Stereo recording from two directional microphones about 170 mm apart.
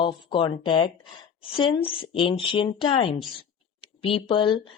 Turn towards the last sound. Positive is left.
turn(degrees=30)  # may be behind; listen again after turning